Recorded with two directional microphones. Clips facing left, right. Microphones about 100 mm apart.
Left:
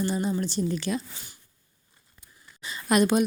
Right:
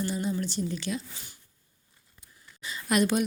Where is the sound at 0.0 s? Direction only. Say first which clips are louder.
Left 3 dB; 35° left (ahead or behind).